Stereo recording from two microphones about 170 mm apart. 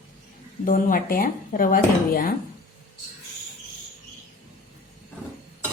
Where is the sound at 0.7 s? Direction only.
55° left (ahead or behind).